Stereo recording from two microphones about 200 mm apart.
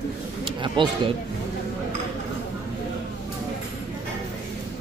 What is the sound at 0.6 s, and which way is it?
Speech, 25° right (ahead or behind).